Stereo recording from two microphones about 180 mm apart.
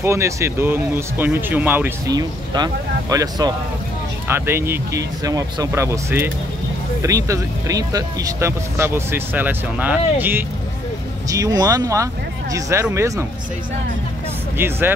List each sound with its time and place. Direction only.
0.0 s speech: 15° right (ahead or behind)
2.0 s speech: 20° right (ahead or behind)
14.6 s speech: 10° right (ahead or behind)